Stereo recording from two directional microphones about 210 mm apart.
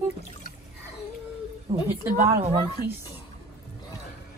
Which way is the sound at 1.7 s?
20° right (ahead or behind).